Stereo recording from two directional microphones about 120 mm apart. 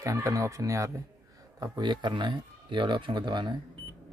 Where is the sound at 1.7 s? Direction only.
40° right (ahead or behind).